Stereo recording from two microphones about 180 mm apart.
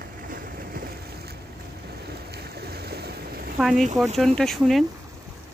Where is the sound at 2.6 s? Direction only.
60° right (ahead or behind).